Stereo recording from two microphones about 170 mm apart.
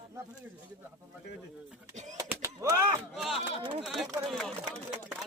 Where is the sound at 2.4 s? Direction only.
20° right (ahead or behind).